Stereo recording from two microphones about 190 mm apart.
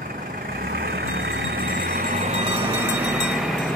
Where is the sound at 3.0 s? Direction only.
5° right (ahead or behind).